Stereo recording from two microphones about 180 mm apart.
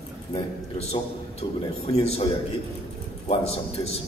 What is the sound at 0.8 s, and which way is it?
A man's voice, 35° left (ahead or behind).